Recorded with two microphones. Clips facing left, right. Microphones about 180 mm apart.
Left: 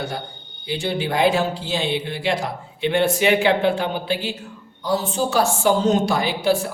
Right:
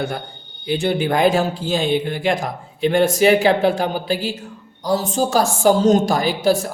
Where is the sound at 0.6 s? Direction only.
55° right (ahead or behind).